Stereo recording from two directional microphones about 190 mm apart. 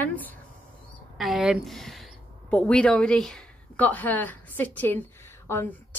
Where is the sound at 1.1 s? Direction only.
Centre (ahead or behind).